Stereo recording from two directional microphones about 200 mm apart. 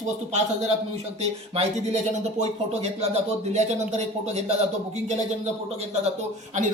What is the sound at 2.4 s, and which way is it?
Speech, 30° right (ahead or behind).